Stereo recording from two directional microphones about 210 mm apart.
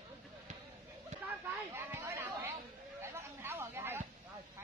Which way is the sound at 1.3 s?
10° right (ahead or behind).